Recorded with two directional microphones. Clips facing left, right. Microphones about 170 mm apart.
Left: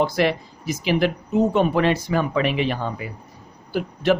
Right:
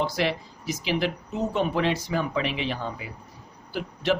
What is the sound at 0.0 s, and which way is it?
Speech, 55° left (ahead or behind).